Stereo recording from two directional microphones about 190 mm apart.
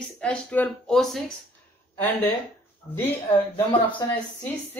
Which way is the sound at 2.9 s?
10° left (ahead or behind).